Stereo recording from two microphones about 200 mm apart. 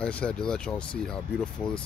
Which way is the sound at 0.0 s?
5° left (ahead or behind).